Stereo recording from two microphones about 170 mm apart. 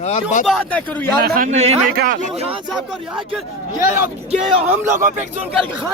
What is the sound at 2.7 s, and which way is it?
Speech, centre (ahead or behind).